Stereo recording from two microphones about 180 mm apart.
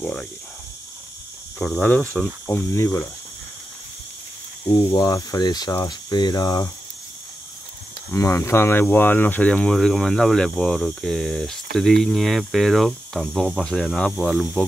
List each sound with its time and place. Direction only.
0.0 s speech: centre (ahead or behind)
1.6 s speech: centre (ahead or behind)
4.6 s speech: 30° left (ahead or behind)
8.1 s speech: 15° left (ahead or behind)